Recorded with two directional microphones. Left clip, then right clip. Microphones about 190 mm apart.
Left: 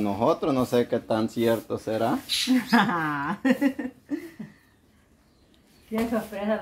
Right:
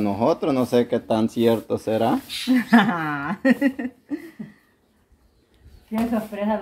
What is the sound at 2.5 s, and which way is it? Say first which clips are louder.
Speech: right 5 dB; 30° right (ahead or behind).